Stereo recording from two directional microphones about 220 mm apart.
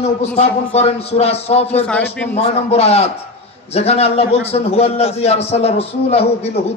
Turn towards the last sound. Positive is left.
turn(degrees=30)  # may be behind; listen again after turning